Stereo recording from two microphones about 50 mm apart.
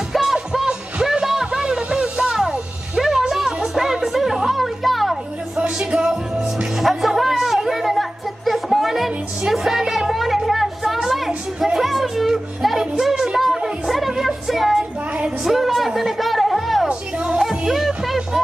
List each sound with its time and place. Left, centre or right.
0.1 s music: centre
5.9 s music: centre
6.8 s a sound: centre
11.0 s music: centre